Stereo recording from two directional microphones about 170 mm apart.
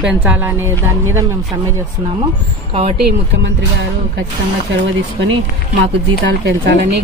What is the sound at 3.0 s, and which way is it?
Speech, 90° right.